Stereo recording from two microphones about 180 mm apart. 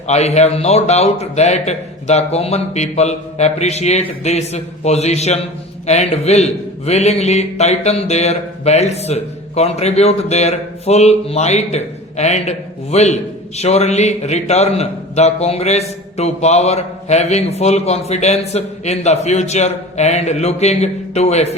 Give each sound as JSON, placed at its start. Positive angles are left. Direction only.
{"t": 0.1, "sound": "a man's voice", "side_deg": 40}